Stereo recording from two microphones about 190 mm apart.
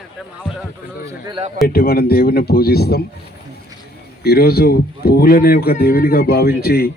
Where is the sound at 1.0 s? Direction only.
25° right (ahead or behind).